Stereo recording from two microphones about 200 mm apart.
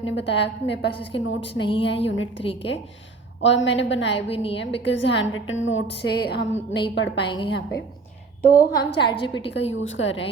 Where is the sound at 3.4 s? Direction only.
65° left (ahead or behind).